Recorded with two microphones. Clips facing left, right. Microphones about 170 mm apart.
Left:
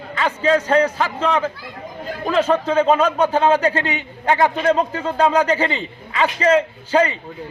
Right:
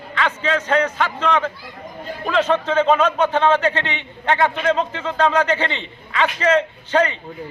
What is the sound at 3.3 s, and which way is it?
A man's voice, 10° left (ahead or behind).